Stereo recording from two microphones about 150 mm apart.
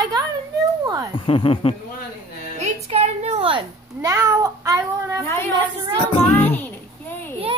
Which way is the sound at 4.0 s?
20° right (ahead or behind).